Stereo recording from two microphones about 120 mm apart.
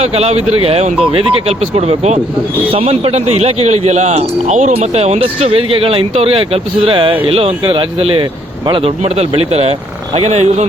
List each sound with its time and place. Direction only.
0.0 s speech: 60° right (ahead or behind); by 8.9 s 45° right (ahead or behind)
9.0 s speech: 55° right (ahead or behind)